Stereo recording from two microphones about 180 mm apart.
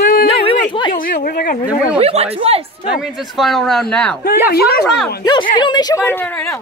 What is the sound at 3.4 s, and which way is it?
Speech, centre (ahead or behind).